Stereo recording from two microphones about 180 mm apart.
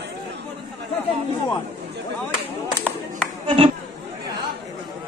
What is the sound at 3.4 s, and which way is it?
Speech, 30° right (ahead or behind).